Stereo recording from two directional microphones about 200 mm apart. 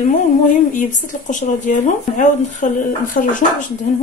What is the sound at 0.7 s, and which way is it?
Speech, 40° left (ahead or behind).